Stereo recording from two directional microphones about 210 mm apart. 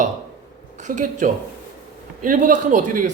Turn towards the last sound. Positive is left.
turn(degrees=-35)  # may be behind; listen again after turning